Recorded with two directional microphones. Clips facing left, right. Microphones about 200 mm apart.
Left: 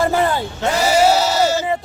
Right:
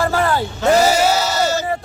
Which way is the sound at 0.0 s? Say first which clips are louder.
Left 1 dB; 20° left (ahead or behind).